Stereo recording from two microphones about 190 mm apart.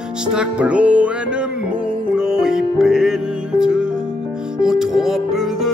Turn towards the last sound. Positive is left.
turn(degrees=0)  # may be behind; listen again after turning